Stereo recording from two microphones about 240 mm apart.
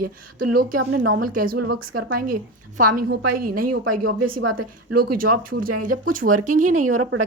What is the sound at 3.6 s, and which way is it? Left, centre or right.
Speech, right.